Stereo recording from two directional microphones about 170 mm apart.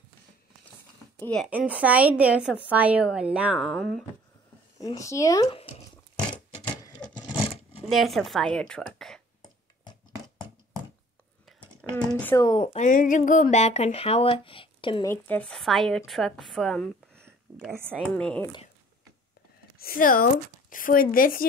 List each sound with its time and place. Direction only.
1.2 s a woman's voice: 5° left (ahead or behind)
1.5 s a woman's voice: 10° right (ahead or behind)
4.7 s speech: 20° left (ahead or behind)
6.3 s a sound: 25° left (ahead or behind)
7.9 s a woman's voice: centre (ahead or behind)
11.8 s a sound: 10° left (ahead or behind)
12.2 s a woman's voice: 15° left (ahead or behind)
12.5 s speech: 40° left (ahead or behind)
15.0 s a woman's voice: 10° left (ahead or behind)
17.6 s a woman's voice: 15° right (ahead or behind)
18.0 s a woman's voice: 5° left (ahead or behind)
19.8 s speech: 55° left (ahead or behind)